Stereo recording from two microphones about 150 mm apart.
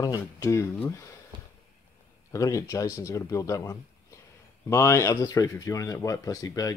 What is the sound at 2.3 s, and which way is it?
Speech, 20° left (ahead or behind).